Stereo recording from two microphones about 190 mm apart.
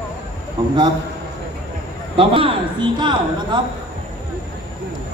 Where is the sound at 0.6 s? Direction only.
20° right (ahead or behind).